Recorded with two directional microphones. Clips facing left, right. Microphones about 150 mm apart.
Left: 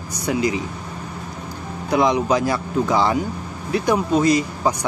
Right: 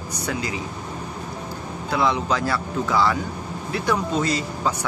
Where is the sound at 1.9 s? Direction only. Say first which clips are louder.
Left 5 dB; 15° left (ahead or behind).